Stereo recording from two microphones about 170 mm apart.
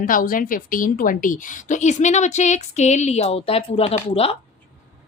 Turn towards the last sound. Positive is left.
turn(degrees=35)  # may be behind; listen again after turning